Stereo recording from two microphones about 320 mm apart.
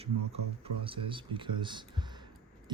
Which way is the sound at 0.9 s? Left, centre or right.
Centre.